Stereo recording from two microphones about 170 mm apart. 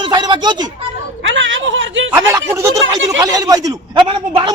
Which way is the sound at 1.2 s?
90° right.